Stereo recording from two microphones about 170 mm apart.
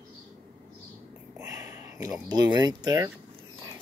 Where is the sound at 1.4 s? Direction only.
20° right (ahead or behind).